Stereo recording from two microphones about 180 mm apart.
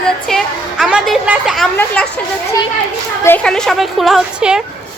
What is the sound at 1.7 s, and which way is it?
Speech, 10° left (ahead or behind).